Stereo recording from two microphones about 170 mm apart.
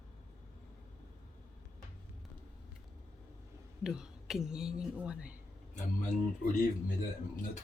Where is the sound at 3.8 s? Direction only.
5° right (ahead or behind).